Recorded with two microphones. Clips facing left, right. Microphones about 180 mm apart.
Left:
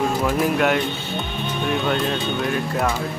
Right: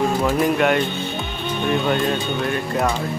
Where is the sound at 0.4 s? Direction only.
Centre (ahead or behind).